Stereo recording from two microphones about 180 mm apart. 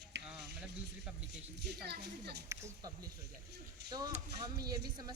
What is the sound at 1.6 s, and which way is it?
Speech, 65° right (ahead or behind).